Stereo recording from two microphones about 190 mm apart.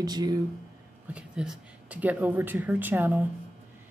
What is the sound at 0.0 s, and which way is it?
Speech, 20° right (ahead or behind).